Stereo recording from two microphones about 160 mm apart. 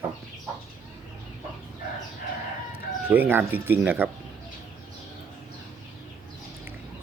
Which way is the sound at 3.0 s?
10° right (ahead or behind).